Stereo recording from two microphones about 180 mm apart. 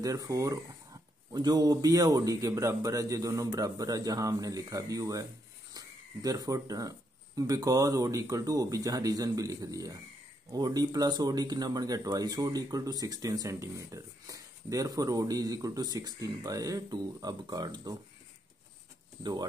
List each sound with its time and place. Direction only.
0.0 s speech: 20° right (ahead or behind)